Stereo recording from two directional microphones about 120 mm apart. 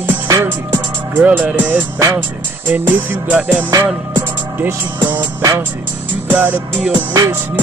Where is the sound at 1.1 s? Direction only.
15° right (ahead or behind).